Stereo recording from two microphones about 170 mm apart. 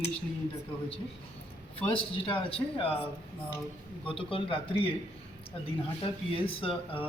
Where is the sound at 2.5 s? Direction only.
35° left (ahead or behind).